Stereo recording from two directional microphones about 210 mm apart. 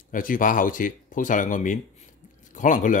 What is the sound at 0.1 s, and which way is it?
Speech, 40° left (ahead or behind).